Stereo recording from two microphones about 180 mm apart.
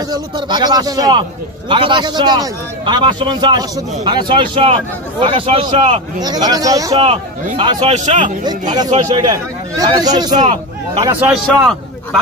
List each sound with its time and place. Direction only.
0.1 s a man's voice: 25° right (ahead or behind)
7.0 s a man's voice: 35° right (ahead or behind)
8.5 s a man's voice: 20° right (ahead or behind)
11.1 s a man's voice: 5° right (ahead or behind)